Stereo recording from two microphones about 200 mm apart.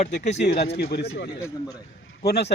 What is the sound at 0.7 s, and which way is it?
Speech, 55° left (ahead or behind).